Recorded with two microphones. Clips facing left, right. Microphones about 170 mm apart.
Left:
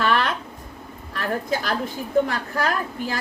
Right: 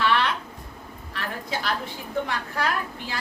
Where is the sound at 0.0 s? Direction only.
45° left (ahead or behind).